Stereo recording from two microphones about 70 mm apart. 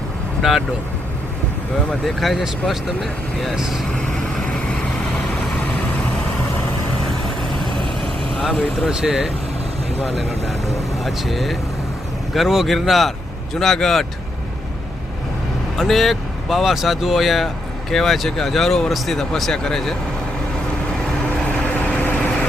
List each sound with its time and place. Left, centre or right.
0.4 s speech: centre
1.9 s speech: centre
3.9 s vehicle: centre
8.4 s speech: centre
11.0 s speech: centre
15.8 s speech: centre
21.4 s vehicle: left